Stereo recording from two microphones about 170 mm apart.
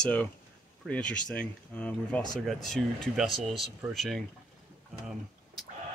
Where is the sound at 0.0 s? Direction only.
10° left (ahead or behind).